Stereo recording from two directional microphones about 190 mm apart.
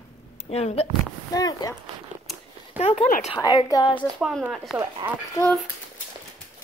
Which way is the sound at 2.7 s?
35° left (ahead or behind).